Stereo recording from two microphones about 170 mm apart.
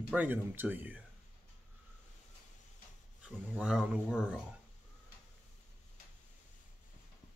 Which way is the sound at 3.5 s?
5° right (ahead or behind).